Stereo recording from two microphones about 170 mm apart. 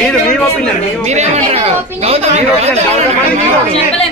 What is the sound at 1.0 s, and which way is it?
Speech, 40° right (ahead or behind).